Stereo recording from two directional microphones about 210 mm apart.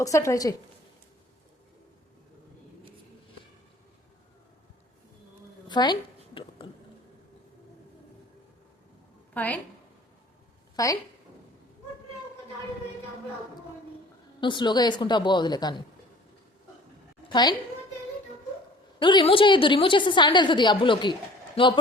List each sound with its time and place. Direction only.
0.0 s a woman's voice: 15° left (ahead or behind)
5.6 s a sound: 20° left (ahead or behind)
9.3 s a woman's voice: 10° left (ahead or behind)
10.8 s a woman's voice: 15° left (ahead or behind)
14.4 s a woman's voice: 20° left (ahead or behind)
17.2 s a sound: 20° left (ahead or behind)
18.9 s a woman's voice: 25° left (ahead or behind)